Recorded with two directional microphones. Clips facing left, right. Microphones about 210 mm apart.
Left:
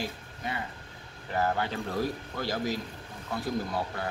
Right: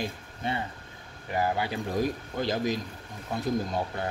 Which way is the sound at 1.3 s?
10° right (ahead or behind).